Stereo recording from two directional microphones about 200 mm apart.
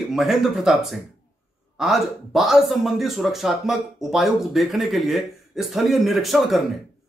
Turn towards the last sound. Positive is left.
turn(degrees=0)  # may be behind; listen again after turning